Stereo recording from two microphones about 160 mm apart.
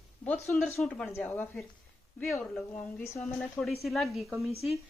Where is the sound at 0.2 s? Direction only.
10° left (ahead or behind).